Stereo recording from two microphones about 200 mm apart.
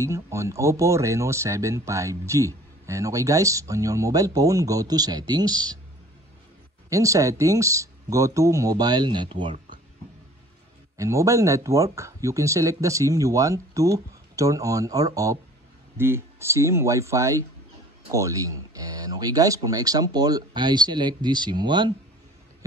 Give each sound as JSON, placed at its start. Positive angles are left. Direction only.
{"t": 0.0, "sound": "speech", "side_deg": -15}
{"t": 6.9, "sound": "speech", "side_deg": -15}
{"t": 11.0, "sound": "speech", "side_deg": -15}